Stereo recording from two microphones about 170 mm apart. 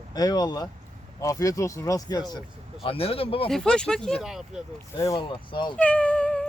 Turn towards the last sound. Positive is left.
turn(degrees=5)  # may be behind; listen again after turning